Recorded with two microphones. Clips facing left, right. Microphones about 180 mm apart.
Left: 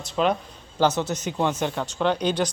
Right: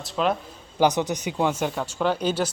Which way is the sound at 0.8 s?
15° right (ahead or behind).